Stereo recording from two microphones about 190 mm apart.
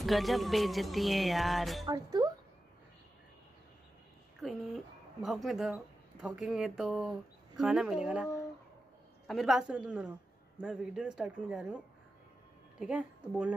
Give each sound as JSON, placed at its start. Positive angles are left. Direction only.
{"t": 0.0, "sound": "music", "side_deg": 0}
{"t": 1.9, "sound": "speech", "side_deg": -20}
{"t": 4.4, "sound": "speech", "side_deg": 0}
{"t": 9.3, "sound": "music", "side_deg": 0}
{"t": 12.7, "sound": "a woman's voice", "side_deg": -5}